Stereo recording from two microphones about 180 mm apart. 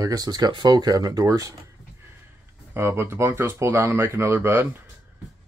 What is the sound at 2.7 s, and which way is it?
Speech, 15° right (ahead or behind).